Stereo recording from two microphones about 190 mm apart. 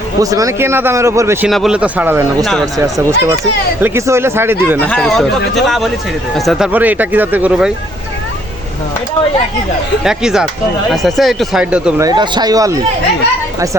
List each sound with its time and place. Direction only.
0.2 s speech: 15° right (ahead or behind)
1.5 s speech: centre (ahead or behind)
2.4 s speech: centre (ahead or behind)
2.7 s speech: 15° right (ahead or behind)
4.8 s speech: 5° left (ahead or behind)
10.0 s speech: 5° right (ahead or behind)
11.9 s speech: 20° right (ahead or behind)